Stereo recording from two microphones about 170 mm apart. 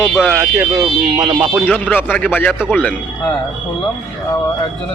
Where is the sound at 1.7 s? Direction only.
10° left (ahead or behind).